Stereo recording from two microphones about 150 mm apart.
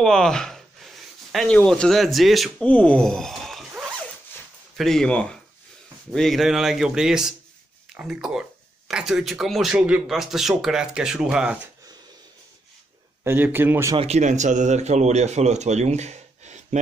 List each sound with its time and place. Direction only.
0.0 s speech: 5° left (ahead or behind)
13.2 s speech: 15° right (ahead or behind)
13.9 s speech: 45° right (ahead or behind)